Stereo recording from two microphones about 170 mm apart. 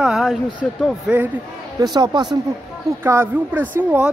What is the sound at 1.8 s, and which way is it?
Speech, 25° right (ahead or behind).